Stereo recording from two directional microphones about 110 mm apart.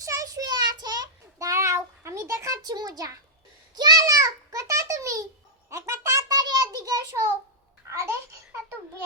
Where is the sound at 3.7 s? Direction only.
40° right (ahead or behind).